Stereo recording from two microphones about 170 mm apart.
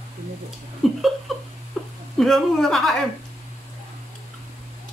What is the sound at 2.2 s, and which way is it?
Speech, centre (ahead or behind).